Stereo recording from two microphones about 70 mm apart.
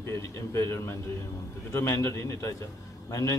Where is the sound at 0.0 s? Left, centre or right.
Left.